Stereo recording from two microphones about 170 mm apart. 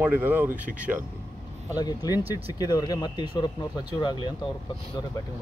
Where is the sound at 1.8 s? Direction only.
20° left (ahead or behind).